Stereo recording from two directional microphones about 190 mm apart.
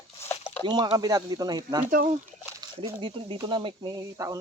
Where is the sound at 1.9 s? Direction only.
45° right (ahead or behind).